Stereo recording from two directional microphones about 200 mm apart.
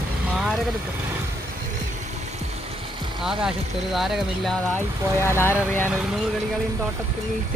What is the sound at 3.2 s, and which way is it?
Speech, 5° right (ahead or behind).